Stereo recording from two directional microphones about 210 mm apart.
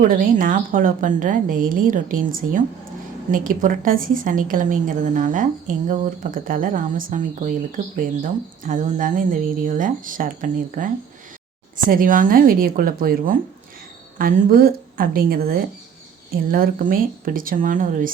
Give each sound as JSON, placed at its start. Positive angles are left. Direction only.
{"t": 0.1, "sound": "a woman's voice", "side_deg": -40}
{"t": 11.9, "sound": "a woman's voice", "side_deg": -40}